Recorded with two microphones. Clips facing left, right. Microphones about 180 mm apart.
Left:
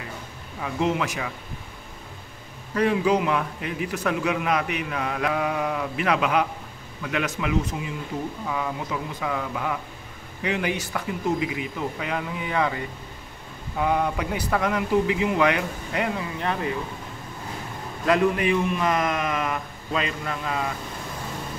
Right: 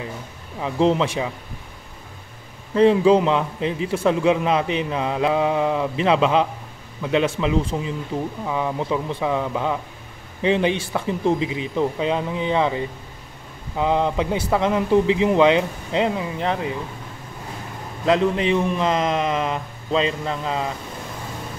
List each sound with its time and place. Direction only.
0.6 s a man's voice: 30° right (ahead or behind)
2.7 s a man's voice: 25° right (ahead or behind)
18.0 s a man's voice: 20° right (ahead or behind)